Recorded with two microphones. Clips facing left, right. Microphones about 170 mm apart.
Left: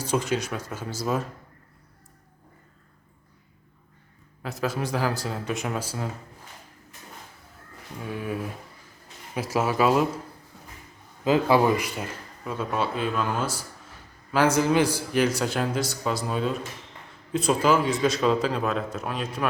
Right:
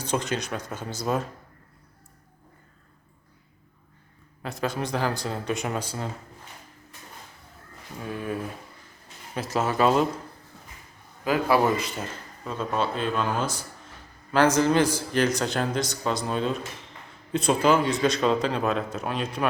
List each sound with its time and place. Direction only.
0.0 s speech: 5° left (ahead or behind)
4.4 s speech: 5° left (ahead or behind)
8.0 s a man's voice: 5° left (ahead or behind)
11.2 s a man's voice: 25° left (ahead or behind); by 19.5 s centre (ahead or behind)